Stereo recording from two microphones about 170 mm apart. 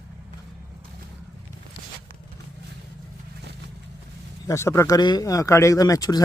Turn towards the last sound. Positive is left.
turn(degrees=20)  # may be behind; listen again after turning